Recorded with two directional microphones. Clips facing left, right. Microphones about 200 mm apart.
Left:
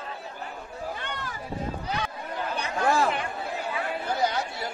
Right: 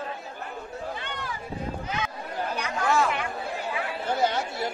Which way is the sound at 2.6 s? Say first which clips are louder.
Left 1 dB; 35° left (ahead or behind).